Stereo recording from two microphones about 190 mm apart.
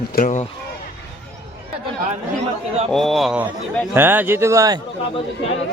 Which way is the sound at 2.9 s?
Centre (ahead or behind).